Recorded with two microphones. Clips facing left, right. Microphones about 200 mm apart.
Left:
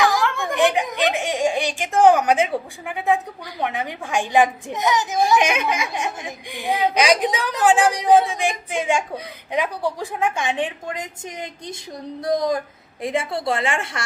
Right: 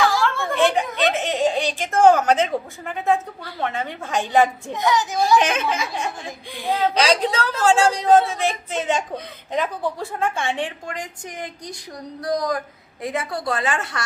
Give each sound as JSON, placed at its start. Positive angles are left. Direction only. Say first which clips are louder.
{"t": 0.0, "sound": "a woman's voice", "louder": "even", "side_deg": 15}